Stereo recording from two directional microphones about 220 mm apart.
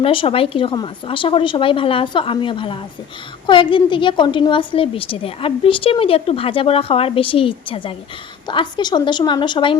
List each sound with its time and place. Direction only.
0.0 s a woman's voice: 25° left (ahead or behind)